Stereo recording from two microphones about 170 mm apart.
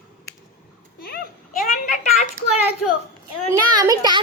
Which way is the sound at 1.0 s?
60° left (ahead or behind).